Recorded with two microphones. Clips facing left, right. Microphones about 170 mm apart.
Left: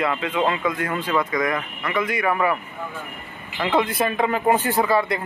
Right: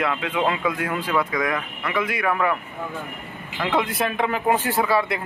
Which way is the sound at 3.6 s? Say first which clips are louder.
Left 2 dB; centre (ahead or behind).